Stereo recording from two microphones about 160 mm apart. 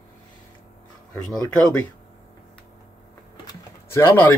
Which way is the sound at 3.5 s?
15° left (ahead or behind).